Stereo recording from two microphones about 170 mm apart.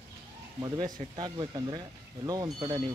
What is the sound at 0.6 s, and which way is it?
Speech, 25° right (ahead or behind).